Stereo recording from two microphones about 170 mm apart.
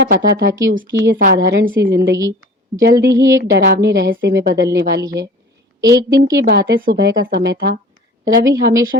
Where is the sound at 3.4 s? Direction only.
80° right.